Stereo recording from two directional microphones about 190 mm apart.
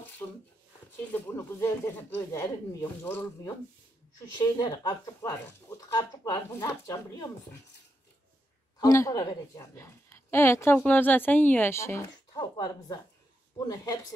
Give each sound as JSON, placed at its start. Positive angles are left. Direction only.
{"t": 1.1, "sound": "speech", "side_deg": 10}
{"t": 8.7, "sound": "a woman's voice", "side_deg": 20}